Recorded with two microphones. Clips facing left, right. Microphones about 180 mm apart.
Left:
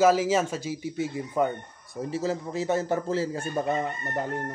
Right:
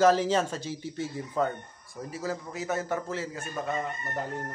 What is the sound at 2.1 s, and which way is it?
A man's voice, 25° left (ahead or behind).